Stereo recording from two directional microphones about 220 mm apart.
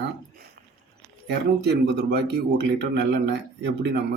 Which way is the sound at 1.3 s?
50° right (ahead or behind).